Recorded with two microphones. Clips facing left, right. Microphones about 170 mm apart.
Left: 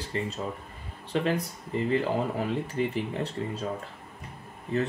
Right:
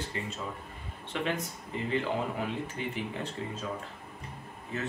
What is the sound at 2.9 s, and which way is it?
Speech, 35° left (ahead or behind).